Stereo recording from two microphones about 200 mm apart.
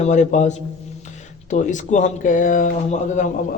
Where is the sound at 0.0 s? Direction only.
35° left (ahead or behind).